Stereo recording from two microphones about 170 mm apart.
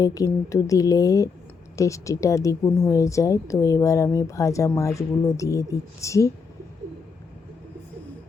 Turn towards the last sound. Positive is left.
turn(degrees=20)  # may be behind; listen again after turning